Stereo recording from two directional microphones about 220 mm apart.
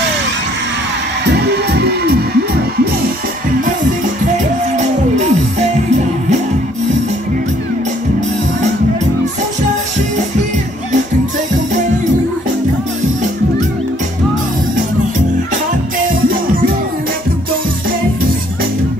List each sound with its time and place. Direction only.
1.2 s music: 50° right (ahead or behind)
4.7 s music: 30° right (ahead or behind)